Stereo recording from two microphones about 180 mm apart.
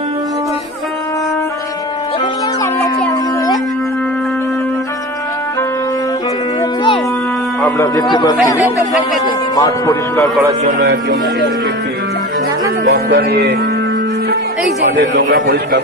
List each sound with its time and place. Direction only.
7.6 s speech: 15° left (ahead or behind)
9.6 s speech: 15° left (ahead or behind)
10.6 s speech: 50° right (ahead or behind)
12.8 s music: 60° right (ahead or behind)
15.1 s a man's voice: 90° right